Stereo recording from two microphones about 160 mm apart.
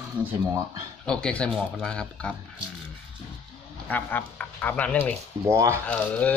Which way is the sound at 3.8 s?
10° left (ahead or behind).